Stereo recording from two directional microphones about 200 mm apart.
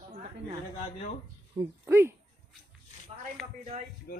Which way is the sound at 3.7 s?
35° right (ahead or behind).